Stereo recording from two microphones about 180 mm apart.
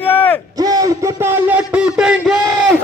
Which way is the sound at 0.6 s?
20° right (ahead or behind).